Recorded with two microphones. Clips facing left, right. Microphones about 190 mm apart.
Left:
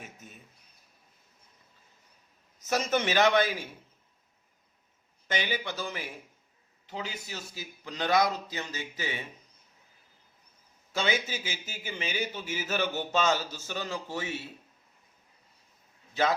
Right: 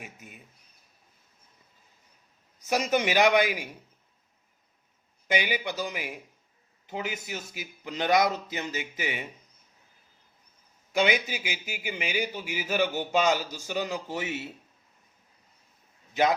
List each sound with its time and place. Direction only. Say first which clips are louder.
0.0 s a man's voice: right 2 dB; 10° right (ahead or behind)
2.6 s a man's voice: right 2 dB; 10° right (ahead or behind)
5.3 s a man's voice: right 4 dB; 10° right (ahead or behind)
10.9 s a man's voice: right 4 dB; 15° right (ahead or behind)